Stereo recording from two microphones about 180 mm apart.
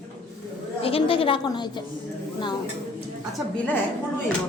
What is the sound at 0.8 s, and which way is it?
Speech, 30° left (ahead or behind).